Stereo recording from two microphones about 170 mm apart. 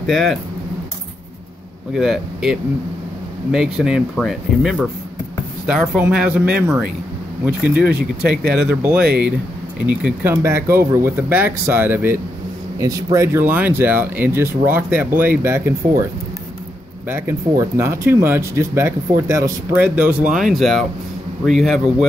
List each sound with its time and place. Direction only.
0.0 s speech: centre (ahead or behind)
2.0 s speech: 5° right (ahead or behind)
7.7 s speech: 70° right (ahead or behind)
9.8 s speech: 10° right (ahead or behind)
17.1 s speech: 15° right (ahead or behind)
20.3 s speech: centre (ahead or behind)